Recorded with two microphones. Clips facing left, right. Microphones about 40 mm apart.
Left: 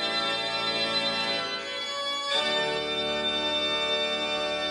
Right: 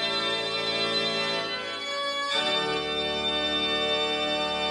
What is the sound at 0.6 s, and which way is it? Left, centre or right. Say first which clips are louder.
Organ: right 1 dB; centre.